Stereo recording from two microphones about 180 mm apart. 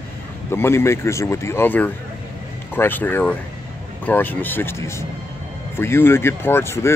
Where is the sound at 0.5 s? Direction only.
15° left (ahead or behind).